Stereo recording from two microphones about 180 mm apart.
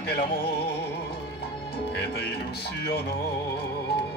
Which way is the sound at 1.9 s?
65° left (ahead or behind).